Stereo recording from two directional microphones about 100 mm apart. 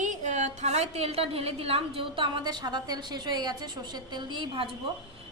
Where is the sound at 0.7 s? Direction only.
90° right; by 4.7 s 60° right (ahead or behind).